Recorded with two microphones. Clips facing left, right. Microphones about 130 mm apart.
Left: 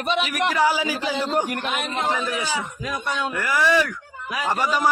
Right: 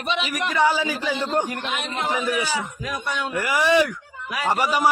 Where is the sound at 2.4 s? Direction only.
20° left (ahead or behind).